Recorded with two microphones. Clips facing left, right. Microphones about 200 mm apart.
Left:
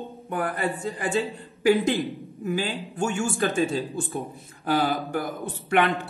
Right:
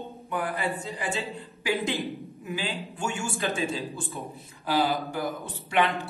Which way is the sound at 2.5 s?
45° left (ahead or behind).